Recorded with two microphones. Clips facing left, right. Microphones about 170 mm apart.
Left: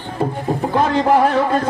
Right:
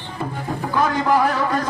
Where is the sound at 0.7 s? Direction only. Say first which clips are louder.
Left 3 dB; 25° left (ahead or behind).